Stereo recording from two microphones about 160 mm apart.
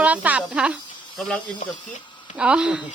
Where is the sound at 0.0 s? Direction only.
10° right (ahead or behind).